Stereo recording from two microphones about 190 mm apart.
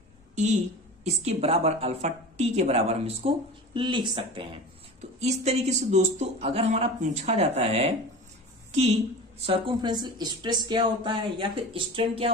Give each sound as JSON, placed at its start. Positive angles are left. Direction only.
{"t": 1.0, "sound": "a woman's voice", "side_deg": -35}